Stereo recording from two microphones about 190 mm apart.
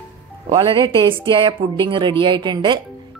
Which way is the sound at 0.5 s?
25° right (ahead or behind).